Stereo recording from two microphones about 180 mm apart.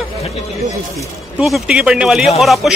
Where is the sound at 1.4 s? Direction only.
Centre (ahead or behind).